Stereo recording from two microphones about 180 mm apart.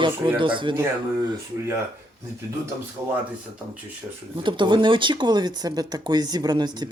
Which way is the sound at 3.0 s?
15° right (ahead or behind).